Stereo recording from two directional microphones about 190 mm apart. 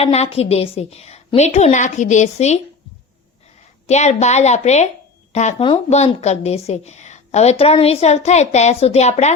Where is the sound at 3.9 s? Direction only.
35° left (ahead or behind).